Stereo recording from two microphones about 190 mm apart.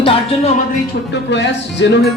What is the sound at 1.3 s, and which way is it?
Music, 65° left (ahead or behind).